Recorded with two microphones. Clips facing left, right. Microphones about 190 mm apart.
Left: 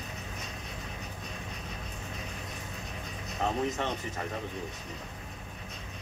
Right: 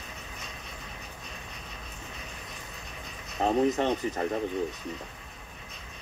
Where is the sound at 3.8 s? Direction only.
40° right (ahead or behind).